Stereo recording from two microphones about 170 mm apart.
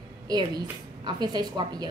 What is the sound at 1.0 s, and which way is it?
Speech, 25° right (ahead or behind).